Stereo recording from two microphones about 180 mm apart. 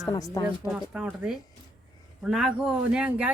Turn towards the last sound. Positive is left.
turn(degrees=-5)  # may be behind; listen again after turning